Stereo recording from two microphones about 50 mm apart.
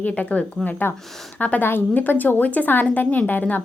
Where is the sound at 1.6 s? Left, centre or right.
Left.